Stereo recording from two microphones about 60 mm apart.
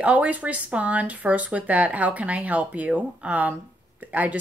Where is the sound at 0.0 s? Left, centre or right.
Right.